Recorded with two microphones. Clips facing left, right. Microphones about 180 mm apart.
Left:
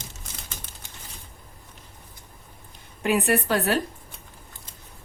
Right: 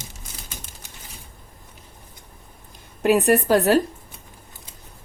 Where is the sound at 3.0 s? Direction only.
40° right (ahead or behind).